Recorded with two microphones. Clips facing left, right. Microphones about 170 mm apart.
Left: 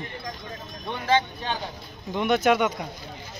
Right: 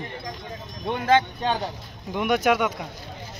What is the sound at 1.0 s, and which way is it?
Speech, 50° right (ahead or behind).